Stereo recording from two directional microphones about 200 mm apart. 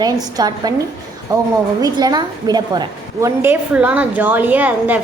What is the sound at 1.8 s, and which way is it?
A woman's voice, 20° right (ahead or behind).